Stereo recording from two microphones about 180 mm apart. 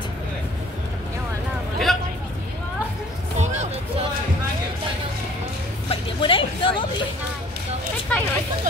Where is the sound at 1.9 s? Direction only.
Centre (ahead or behind).